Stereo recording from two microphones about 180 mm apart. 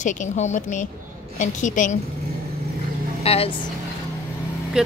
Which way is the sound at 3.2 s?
35° left (ahead or behind).